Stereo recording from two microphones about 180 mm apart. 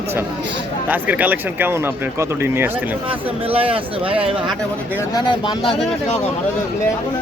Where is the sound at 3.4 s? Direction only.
30° right (ahead or behind).